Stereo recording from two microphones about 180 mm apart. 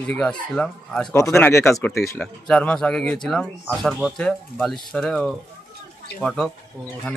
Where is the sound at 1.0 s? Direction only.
20° left (ahead or behind).